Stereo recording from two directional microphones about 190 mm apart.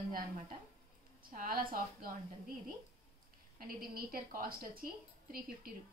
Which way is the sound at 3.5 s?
50° right (ahead or behind).